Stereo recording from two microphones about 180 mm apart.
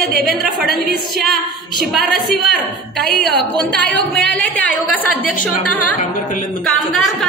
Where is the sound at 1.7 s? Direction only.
Centre (ahead or behind).